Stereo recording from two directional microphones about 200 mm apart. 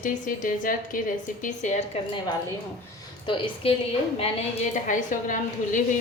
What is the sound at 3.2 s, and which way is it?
A woman's voice, 25° left (ahead or behind).